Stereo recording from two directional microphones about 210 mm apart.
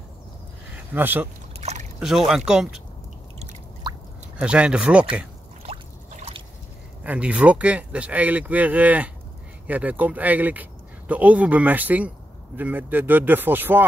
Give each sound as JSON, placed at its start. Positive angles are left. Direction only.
{"t": 0.9, "sound": "speech", "side_deg": -10}
{"t": 1.6, "sound": "a sound", "side_deg": -30}
{"t": 2.0, "sound": "speech", "side_deg": 0}
{"t": 4.4, "sound": "speech", "side_deg": -5}
{"t": 5.6, "sound": "trickle", "side_deg": -30}
{"t": 7.0, "sound": "speech", "side_deg": -5}